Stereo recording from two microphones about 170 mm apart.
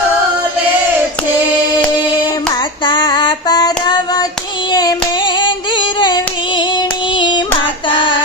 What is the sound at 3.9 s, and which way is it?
Hands, 20° left (ahead or behind).